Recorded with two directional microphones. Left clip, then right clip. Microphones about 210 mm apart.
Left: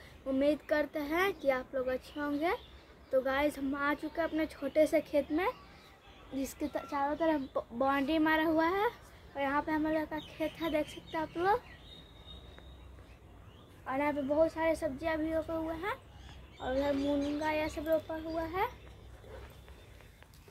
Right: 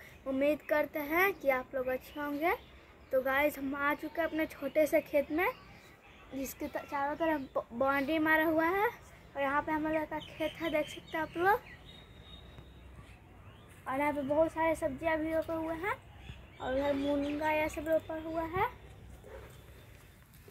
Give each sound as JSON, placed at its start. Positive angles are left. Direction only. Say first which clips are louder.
{"t": 0.3, "sound": "a woman's voice", "louder": "even", "side_deg": 5}
{"t": 11.1, "sound": "a woman's voice", "louder": "right 2 dB", "side_deg": 0}
{"t": 13.8, "sound": "a woman's voice", "louder": "even", "side_deg": -15}
{"t": 14.4, "sound": "a child's voice", "louder": "even", "side_deg": -25}